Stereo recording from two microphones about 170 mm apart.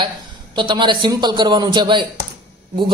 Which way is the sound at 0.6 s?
25° right (ahead or behind).